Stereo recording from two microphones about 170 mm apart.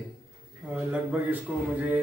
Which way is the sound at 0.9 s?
5° right (ahead or behind).